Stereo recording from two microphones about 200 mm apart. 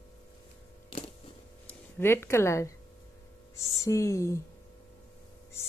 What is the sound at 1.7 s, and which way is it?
Speech, 10° left (ahead or behind).